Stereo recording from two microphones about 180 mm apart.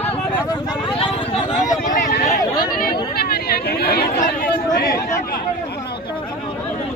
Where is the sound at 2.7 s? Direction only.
55° left (ahead or behind).